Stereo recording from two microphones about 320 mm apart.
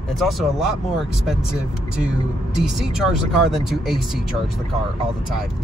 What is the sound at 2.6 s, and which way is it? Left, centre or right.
Speech, centre.